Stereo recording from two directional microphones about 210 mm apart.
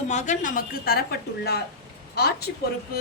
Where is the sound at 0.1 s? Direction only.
35° left (ahead or behind).